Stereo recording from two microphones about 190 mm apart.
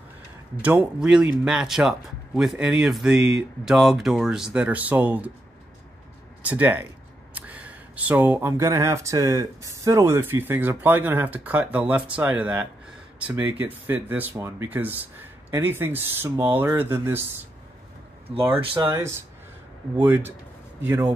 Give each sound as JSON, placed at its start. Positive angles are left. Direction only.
{"t": 0.6, "sound": "speech", "side_deg": -5}
{"t": 6.4, "sound": "speech", "side_deg": -10}
{"t": 18.3, "sound": "speech", "side_deg": -30}
{"t": 18.9, "sound": "speech", "side_deg": -15}